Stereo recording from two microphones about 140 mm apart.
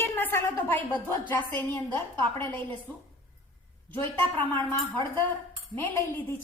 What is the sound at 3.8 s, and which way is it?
A woman's voice, 15° left (ahead or behind).